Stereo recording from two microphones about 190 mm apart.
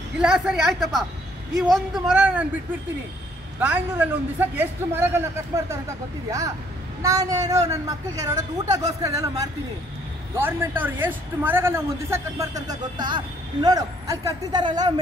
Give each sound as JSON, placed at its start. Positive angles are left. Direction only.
{"t": 0.2, "sound": "a woman's voice", "side_deg": -5}
{"t": 2.0, "sound": "a man's voice", "side_deg": -5}
{"t": 3.5, "sound": "a man's voice", "side_deg": -10}
{"t": 7.0, "sound": "a man's voice", "side_deg": -15}